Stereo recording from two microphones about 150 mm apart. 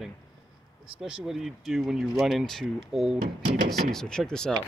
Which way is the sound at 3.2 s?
65° right (ahead or behind).